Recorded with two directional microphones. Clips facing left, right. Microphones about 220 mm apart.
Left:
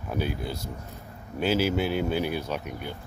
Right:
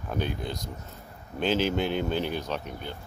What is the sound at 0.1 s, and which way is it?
Speech, 5° left (ahead or behind).